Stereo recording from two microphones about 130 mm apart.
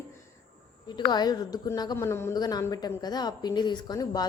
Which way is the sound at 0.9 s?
35° left (ahead or behind).